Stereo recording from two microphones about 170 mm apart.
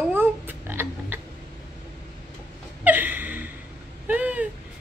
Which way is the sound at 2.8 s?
10° right (ahead or behind).